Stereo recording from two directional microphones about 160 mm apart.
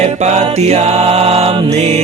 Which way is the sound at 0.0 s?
45° right (ahead or behind).